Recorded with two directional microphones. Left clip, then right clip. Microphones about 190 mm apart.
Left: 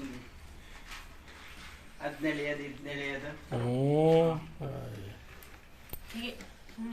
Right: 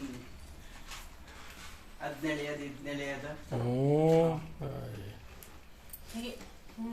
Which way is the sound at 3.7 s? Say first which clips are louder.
Left 1 dB; 15° left (ahead or behind).